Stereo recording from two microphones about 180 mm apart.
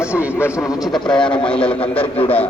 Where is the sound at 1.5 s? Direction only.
5° left (ahead or behind).